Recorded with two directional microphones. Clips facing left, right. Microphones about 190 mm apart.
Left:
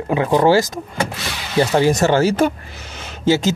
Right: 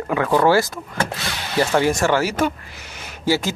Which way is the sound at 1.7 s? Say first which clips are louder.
Left 3 dB; 20° left (ahead or behind).